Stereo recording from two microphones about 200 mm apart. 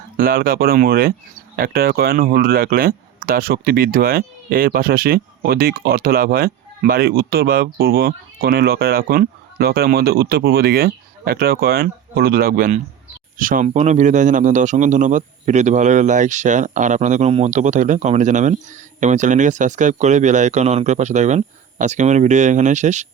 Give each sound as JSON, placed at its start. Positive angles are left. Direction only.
{"t": 0.2, "sound": "a man's voice", "side_deg": -45}